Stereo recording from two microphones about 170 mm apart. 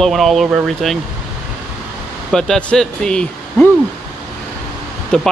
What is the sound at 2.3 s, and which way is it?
Speech, 5° left (ahead or behind).